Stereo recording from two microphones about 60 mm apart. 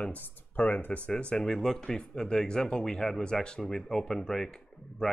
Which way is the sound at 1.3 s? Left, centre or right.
Centre.